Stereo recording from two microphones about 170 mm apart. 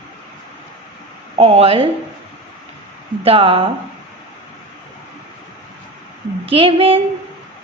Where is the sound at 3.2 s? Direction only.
35° right (ahead or behind).